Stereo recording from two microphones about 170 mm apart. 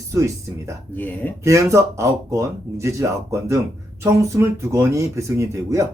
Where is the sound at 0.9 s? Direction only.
10° left (ahead or behind).